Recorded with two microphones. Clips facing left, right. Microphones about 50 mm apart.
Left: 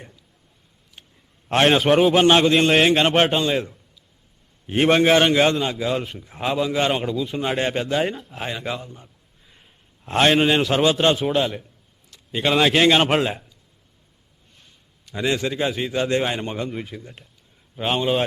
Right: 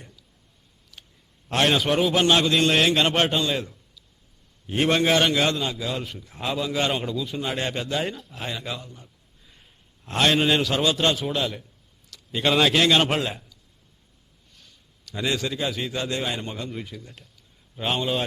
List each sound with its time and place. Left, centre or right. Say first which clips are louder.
1.5 s a man's voice: left 5 dB; left
9.5 s a sound: left 2 dB; centre
10.1 s a man's voice: left 4 dB; left
12.4 s speech: left 2 dB; centre
12.7 s a man's voice: left 3 dB; left
14.5 s a sound: left 1 dB; left
15.8 s a man's voice: left 5 dB; centre
16.0 s a man's voice: left 6 dB; left